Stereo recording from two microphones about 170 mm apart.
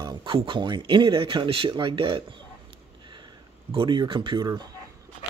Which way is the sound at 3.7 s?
30° right (ahead or behind).